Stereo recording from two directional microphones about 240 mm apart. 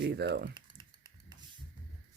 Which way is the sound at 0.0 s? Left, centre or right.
Right.